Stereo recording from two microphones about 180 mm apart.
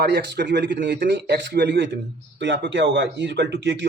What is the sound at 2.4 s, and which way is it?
Speech, 85° right.